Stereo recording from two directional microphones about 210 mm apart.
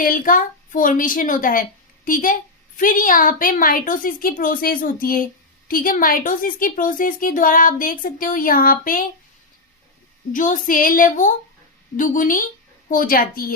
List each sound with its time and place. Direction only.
0.0 s a woman's voice: 40° left (ahead or behind)
10.3 s a woman's voice: 40° left (ahead or behind)